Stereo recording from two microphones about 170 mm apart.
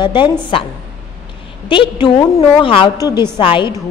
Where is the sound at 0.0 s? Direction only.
30° left (ahead or behind).